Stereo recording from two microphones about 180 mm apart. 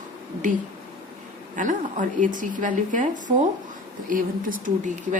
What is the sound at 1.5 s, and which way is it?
A woman's voice, 45° right (ahead or behind).